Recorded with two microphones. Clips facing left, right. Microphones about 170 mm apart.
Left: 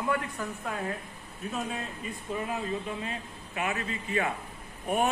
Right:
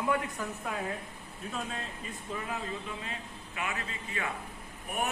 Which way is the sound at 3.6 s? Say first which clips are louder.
Left 5 dB; 40° left (ahead or behind).